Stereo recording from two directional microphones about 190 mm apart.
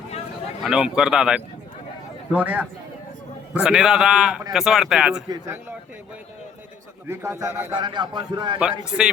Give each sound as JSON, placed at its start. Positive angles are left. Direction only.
{"t": 0.6, "sound": "a man's voice", "side_deg": -5}
{"t": 5.3, "sound": "a man's voice", "side_deg": -15}
{"t": 7.1, "sound": "a man's voice", "side_deg": -15}